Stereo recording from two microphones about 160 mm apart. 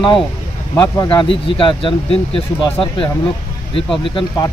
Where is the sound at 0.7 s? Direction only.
15° left (ahead or behind).